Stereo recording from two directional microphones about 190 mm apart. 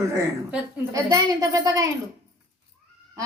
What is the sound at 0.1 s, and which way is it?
A woman's voice, 15° right (ahead or behind).